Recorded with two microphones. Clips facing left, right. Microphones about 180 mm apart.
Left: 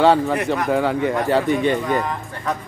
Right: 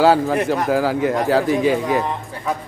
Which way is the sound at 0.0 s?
5° right (ahead or behind).